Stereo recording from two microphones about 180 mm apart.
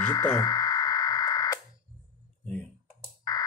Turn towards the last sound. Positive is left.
turn(degrees=20)  # may be behind; listen again after turning